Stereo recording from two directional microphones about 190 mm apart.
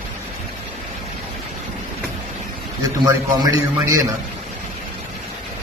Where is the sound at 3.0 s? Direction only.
20° right (ahead or behind).